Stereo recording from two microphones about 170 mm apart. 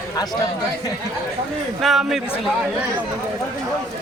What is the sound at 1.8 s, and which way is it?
Speech, centre (ahead or behind).